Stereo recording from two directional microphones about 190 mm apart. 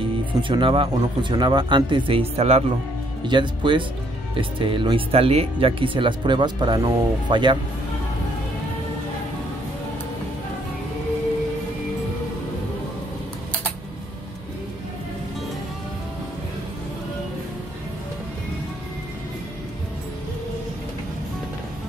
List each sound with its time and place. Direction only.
0.4 s speech: 25° right (ahead or behind)